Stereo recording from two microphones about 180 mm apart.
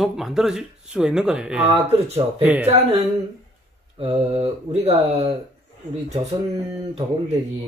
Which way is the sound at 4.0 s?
30° right (ahead or behind).